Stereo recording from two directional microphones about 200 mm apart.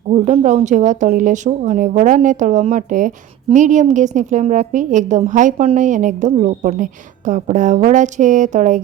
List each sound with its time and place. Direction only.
0.1 s a woman's voice: 35° right (ahead or behind)